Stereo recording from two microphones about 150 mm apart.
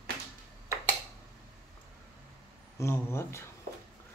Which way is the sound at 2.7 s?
15° left (ahead or behind).